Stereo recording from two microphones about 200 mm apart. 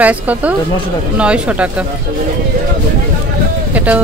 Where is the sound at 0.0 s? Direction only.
5° right (ahead or behind).